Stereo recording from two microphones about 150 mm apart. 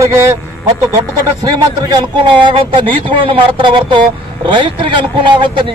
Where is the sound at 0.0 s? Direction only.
20° right (ahead or behind).